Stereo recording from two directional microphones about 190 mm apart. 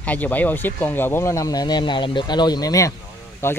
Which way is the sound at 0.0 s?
10° left (ahead or behind).